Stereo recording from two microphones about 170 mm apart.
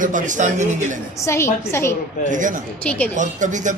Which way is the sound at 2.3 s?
50° right (ahead or behind).